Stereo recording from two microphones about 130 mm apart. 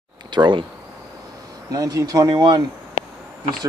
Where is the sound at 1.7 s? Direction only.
30° right (ahead or behind).